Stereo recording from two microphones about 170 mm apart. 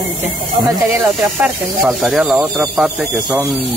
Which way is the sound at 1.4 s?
5° right (ahead or behind).